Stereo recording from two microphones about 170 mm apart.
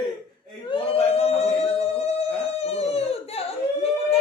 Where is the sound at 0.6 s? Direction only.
35° left (ahead or behind).